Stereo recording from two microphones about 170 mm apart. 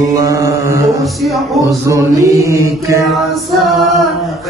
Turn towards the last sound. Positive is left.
turn(degrees=-15)  # may be behind; listen again after turning